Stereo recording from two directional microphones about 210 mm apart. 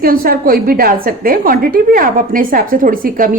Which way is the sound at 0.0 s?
45° right (ahead or behind).